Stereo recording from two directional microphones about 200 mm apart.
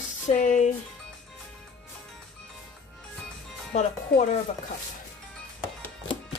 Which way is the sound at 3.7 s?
35° left (ahead or behind).